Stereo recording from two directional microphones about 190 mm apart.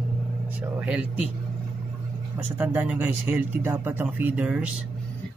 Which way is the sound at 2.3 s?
10° right (ahead or behind).